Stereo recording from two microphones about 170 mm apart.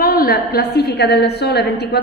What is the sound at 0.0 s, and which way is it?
A woman's voice, 60° left (ahead or behind).